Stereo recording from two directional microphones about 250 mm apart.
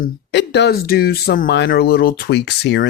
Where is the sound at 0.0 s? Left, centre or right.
Left.